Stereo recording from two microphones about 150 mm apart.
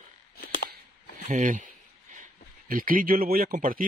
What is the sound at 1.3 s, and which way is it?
Speech, 60° right (ahead or behind).